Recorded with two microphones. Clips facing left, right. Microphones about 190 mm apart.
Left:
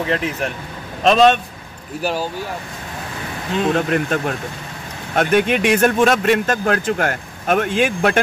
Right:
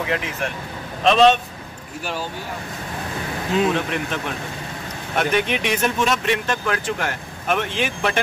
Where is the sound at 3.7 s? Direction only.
45° left (ahead or behind).